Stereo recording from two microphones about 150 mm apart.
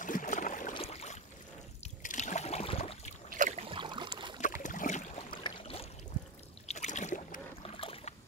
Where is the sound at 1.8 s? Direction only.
50° left (ahead or behind).